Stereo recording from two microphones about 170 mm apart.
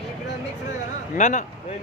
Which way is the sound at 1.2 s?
45° left (ahead or behind).